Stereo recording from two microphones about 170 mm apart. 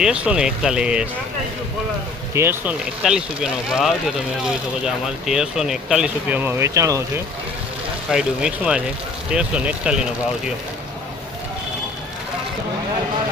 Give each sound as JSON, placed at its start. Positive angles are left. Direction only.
{"t": 0.0, "sound": "speech", "side_deg": -5}
{"t": 2.3, "sound": "speech", "side_deg": -15}
{"t": 8.1, "sound": "speech", "side_deg": -5}